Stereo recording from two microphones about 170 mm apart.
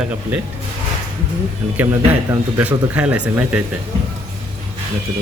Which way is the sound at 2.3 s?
10° right (ahead or behind).